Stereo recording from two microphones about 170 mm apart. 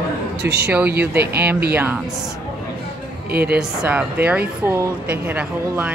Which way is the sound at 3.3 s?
65° right (ahead or behind).